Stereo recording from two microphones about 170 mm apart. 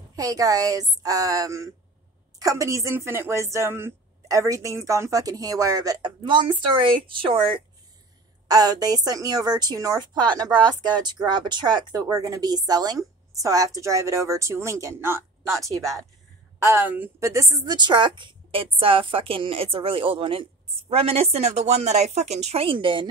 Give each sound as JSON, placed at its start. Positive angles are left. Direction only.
{"t": 0.1, "sound": "a woman's voice", "side_deg": -20}